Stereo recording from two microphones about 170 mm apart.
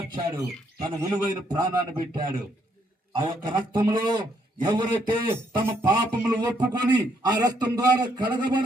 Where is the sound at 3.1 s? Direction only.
25° right (ahead or behind).